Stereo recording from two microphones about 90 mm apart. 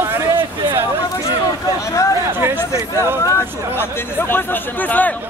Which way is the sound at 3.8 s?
25° left (ahead or behind).